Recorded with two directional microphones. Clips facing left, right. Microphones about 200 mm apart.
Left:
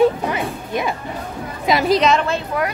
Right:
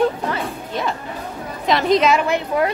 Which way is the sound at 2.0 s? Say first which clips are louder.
Even; 10° right (ahead or behind).